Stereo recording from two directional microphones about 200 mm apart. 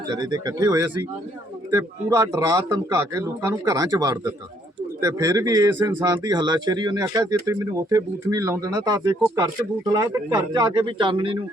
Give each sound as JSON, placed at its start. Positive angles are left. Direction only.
{"t": 0.2, "sound": "speech", "side_deg": -20}